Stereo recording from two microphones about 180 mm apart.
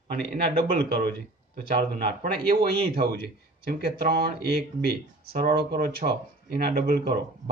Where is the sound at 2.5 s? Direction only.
60° right (ahead or behind).